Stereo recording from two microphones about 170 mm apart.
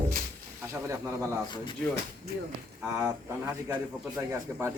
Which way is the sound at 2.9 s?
15° right (ahead or behind).